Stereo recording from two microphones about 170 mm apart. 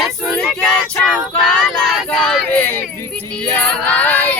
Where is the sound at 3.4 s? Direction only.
5° left (ahead or behind).